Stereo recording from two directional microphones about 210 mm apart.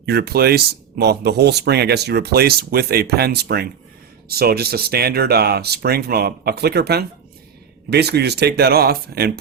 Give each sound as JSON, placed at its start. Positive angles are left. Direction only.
{"t": 0.0, "sound": "speech", "side_deg": -50}